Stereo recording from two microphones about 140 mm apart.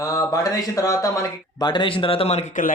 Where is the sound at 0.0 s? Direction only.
25° left (ahead or behind).